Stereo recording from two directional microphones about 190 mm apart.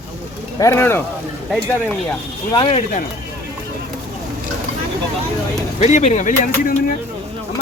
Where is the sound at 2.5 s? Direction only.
30° left (ahead or behind).